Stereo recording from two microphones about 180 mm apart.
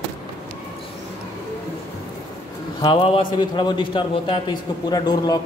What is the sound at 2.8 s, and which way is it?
A man's voice, 30° left (ahead or behind).